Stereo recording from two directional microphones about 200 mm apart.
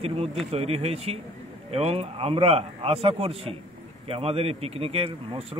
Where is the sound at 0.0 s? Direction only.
30° right (ahead or behind).